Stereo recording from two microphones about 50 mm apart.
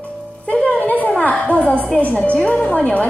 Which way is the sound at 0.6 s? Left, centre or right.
Left.